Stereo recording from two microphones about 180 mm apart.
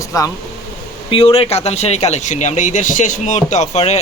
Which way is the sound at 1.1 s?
30° left (ahead or behind).